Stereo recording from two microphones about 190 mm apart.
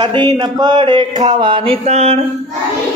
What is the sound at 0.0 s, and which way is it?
Speech, 25° right (ahead or behind).